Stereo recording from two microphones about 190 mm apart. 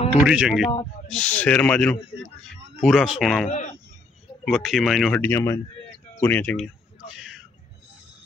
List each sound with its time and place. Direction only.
0.3 s speech: 5° right (ahead or behind)
3.4 s speech: 40° left (ahead or behind)
4.5 s speech: centre (ahead or behind)